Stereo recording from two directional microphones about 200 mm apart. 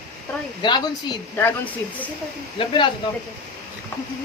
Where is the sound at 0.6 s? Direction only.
20° left (ahead or behind).